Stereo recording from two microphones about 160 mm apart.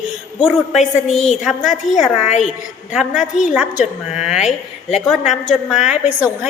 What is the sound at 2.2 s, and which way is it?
Speech, 45° left (ahead or behind).